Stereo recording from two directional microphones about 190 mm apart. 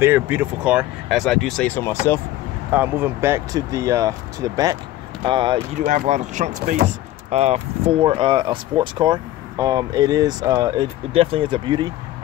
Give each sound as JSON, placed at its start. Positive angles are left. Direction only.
{"t": 0.0, "sound": "speech", "side_deg": -10}
{"t": 1.8, "sound": "speech", "side_deg": 15}
{"t": 2.7, "sound": "speech", "side_deg": -10}
{"t": 5.8, "sound": "speech", "side_deg": -40}